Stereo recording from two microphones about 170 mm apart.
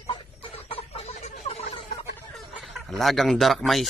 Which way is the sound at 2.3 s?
Centre (ahead or behind).